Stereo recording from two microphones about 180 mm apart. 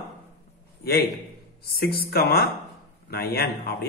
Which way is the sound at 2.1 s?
60° left (ahead or behind).